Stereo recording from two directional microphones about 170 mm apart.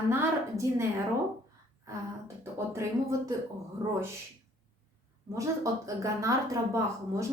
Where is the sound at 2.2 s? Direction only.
15° right (ahead or behind).